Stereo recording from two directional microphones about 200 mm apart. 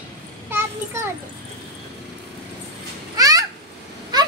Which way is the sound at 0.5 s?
10° right (ahead or behind).